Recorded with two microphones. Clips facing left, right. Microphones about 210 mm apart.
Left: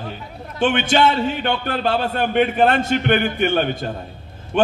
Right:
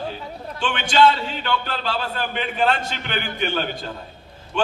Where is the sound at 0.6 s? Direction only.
55° left (ahead or behind).